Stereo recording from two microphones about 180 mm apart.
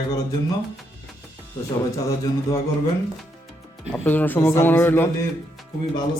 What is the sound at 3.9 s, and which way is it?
Speech, 10° left (ahead or behind).